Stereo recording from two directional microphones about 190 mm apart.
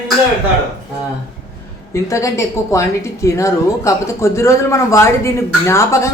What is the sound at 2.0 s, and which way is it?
Speech, 15° left (ahead or behind).